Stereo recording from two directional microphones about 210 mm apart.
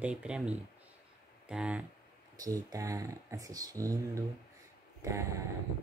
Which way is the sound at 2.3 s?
15° right (ahead or behind).